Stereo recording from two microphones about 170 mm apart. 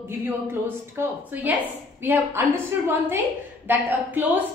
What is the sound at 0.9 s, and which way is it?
A woman's voice, 10° right (ahead or behind).